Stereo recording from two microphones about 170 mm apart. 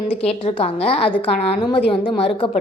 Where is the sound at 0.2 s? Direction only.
35° left (ahead or behind).